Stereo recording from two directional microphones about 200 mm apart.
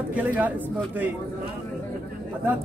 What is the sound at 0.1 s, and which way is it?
Speech, 10° right (ahead or behind).